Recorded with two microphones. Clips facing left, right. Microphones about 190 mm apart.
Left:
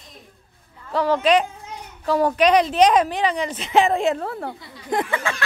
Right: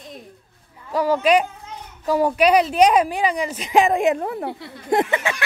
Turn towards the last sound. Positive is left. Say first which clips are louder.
# right 3 dB
turn(degrees=-20)  # may be behind; listen again after turning